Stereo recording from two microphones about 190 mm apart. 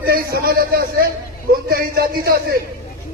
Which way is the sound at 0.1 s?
55° right (ahead or behind).